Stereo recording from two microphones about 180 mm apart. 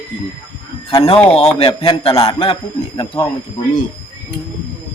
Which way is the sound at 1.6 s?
30° left (ahead or behind).